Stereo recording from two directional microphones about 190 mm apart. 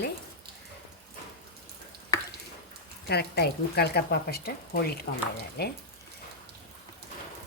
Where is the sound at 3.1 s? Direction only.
60° left (ahead or behind).